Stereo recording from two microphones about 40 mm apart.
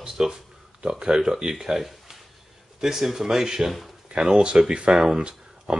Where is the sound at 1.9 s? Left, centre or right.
Centre.